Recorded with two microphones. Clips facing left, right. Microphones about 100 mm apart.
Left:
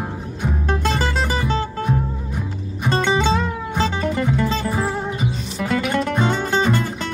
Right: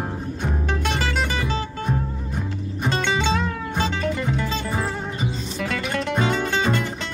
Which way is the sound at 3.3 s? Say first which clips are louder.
Left 2 dB; centre (ahead or behind).